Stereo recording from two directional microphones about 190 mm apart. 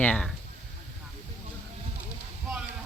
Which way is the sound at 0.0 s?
5° left (ahead or behind).